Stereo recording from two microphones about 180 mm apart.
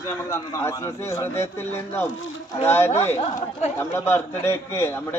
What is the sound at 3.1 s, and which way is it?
Speech, 35° left (ahead or behind).